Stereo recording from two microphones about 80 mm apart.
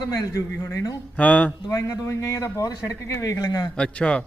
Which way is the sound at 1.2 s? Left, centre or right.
Centre.